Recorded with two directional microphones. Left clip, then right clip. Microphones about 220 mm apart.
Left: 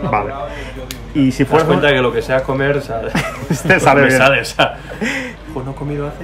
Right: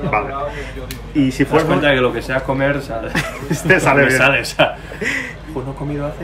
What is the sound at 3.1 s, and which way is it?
Speech, 30° left (ahead or behind).